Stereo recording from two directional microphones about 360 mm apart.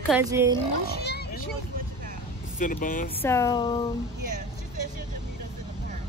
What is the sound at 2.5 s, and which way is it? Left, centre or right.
Speech, left.